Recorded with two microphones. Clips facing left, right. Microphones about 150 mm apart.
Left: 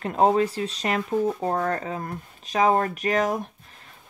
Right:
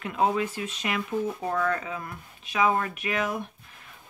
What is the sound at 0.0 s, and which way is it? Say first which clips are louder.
Speech: left 5 dB; 40° left (ahead or behind).